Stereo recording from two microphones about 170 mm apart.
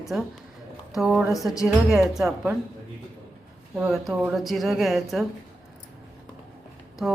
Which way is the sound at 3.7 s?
Centre (ahead or behind).